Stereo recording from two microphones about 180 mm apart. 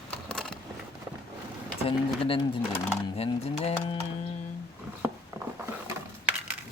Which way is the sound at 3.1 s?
35° left (ahead or behind).